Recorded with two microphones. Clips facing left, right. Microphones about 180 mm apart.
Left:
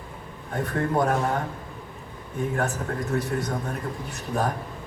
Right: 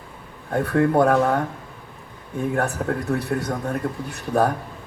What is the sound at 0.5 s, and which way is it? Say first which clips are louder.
Speech: right 7 dB; 70° right (ahead or behind).